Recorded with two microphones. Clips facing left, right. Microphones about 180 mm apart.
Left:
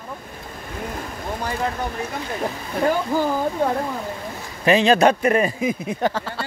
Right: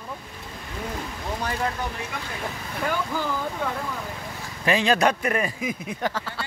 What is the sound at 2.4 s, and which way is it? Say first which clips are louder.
Speech: left 8 dB; 40° left (ahead or behind).